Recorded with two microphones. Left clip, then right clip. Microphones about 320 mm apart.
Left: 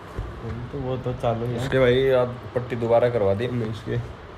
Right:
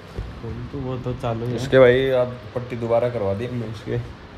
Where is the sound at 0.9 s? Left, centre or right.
Centre.